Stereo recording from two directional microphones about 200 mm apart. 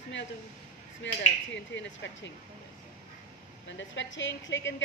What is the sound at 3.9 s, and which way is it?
Speech, 65° left (ahead or behind).